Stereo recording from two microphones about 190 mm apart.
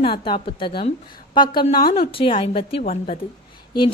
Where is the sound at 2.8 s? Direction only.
40° left (ahead or behind).